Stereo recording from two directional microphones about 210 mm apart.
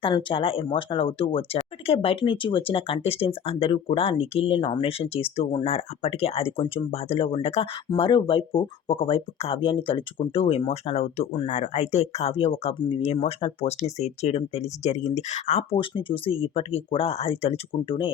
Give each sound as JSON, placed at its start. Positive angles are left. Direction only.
{"t": 0.0, "sound": "speech", "side_deg": 25}